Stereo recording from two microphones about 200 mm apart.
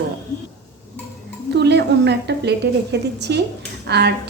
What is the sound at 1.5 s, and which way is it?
A woman's voice, 60° right (ahead or behind).